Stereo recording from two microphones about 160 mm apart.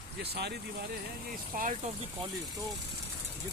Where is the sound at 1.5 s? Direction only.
60° right (ahead or behind).